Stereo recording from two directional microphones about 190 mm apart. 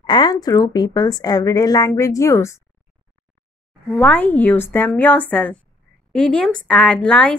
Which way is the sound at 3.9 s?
5° left (ahead or behind).